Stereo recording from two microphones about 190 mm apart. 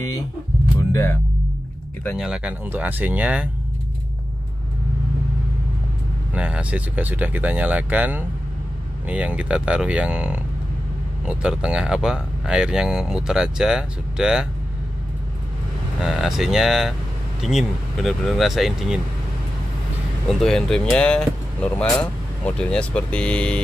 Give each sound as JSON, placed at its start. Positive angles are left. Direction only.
{"t": 0.7, "sound": "speech", "side_deg": 15}
{"t": 2.1, "sound": "speech", "side_deg": -5}
{"t": 6.3, "sound": "speech", "side_deg": -5}
{"t": 16.0, "sound": "speech", "side_deg": 0}
{"t": 20.2, "sound": "speech", "side_deg": 0}